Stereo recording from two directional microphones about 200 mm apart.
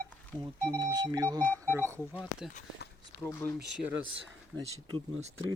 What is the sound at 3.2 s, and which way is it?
Speech, 10° left (ahead or behind).